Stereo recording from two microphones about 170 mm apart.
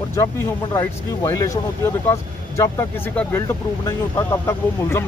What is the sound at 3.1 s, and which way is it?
Speech, 15° left (ahead or behind).